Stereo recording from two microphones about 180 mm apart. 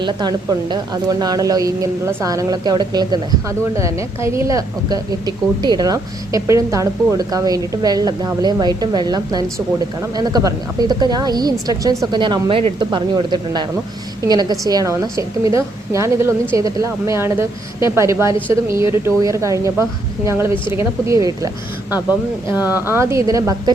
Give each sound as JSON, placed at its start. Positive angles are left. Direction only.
{"t": 0.0, "sound": "a woman's voice", "side_deg": -25}